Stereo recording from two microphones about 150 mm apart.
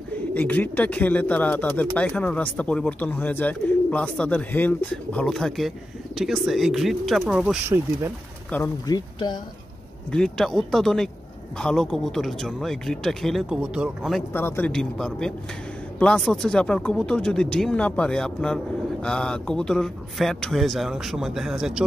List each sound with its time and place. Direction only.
0.3 s a man's voice: 10° left (ahead or behind)
8.5 s speech: 10° left (ahead or behind)
8.8 s speech: 25° left (ahead or behind)
10.1 s a man's voice: 5° left (ahead or behind)
14.3 s speech: 15° left (ahead or behind)
14.7 s a man's voice: 5° left (ahead or behind)